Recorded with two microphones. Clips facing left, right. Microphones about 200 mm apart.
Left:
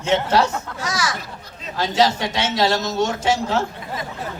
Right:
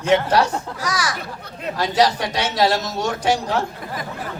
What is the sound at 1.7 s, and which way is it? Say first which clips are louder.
Speech: even; 25° left (ahead or behind).